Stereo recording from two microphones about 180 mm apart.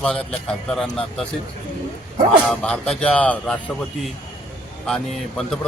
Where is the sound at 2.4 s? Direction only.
5° left (ahead or behind).